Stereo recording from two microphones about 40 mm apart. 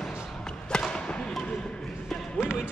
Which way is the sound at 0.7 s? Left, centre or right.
Centre.